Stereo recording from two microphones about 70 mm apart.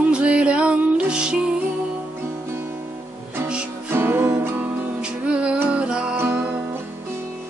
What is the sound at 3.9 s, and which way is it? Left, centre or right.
Music, right.